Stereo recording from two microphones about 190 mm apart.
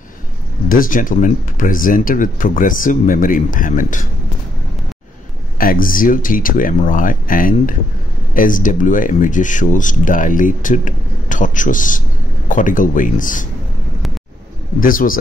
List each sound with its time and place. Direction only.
0.7 s speech: 45° left (ahead or behind)
5.6 s speech: 50° left (ahead or behind)
14.8 s speech: 45° left (ahead or behind)